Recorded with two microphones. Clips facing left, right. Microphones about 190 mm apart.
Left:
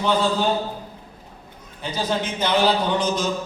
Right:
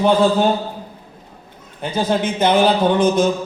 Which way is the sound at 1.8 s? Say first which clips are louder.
Right 6 dB; 50° right (ahead or behind).